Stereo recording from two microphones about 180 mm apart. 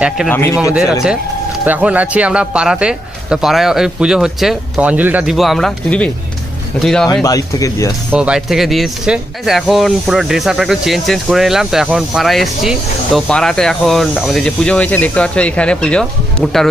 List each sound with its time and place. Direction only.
0.3 s a man's voice: 15° left (ahead or behind)
1.7 s speech: 10° right (ahead or behind)
7.2 s speech: 20° left (ahead or behind)
8.1 s speech: 5° right (ahead or behind)